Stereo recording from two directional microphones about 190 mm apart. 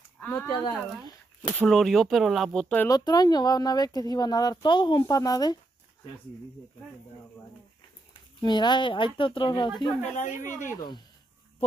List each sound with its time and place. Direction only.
0.2 s speech: 10° left (ahead or behind)
0.6 s speech: 20° left (ahead or behind)
1.6 s speech: 5° left (ahead or behind)
2.9 s speech: 20° left (ahead or behind)
8.1 s speech: 25° left (ahead or behind)
10.1 s a woman's voice: 40° left (ahead or behind)
10.8 s speech: 20° left (ahead or behind)